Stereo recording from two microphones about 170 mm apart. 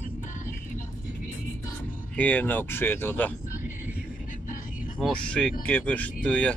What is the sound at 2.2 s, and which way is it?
Speech, 10° left (ahead or behind).